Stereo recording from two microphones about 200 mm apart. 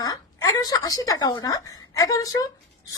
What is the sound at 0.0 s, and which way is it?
A woman's voice, 15° left (ahead or behind).